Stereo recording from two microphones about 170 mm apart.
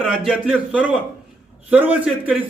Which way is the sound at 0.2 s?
5° right (ahead or behind).